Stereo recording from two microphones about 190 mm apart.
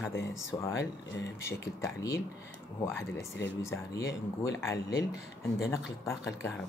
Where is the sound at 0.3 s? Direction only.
15° left (ahead or behind).